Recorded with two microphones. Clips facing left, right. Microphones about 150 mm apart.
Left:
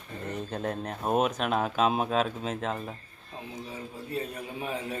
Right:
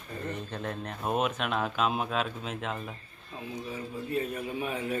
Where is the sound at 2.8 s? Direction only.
35° left (ahead or behind).